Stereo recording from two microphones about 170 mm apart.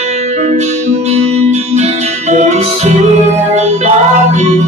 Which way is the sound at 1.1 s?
40° right (ahead or behind).